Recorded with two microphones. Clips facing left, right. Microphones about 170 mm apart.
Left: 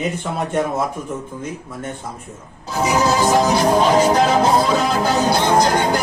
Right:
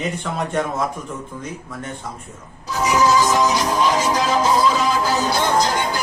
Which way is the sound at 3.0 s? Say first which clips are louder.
Even; 50° left (ahead or behind).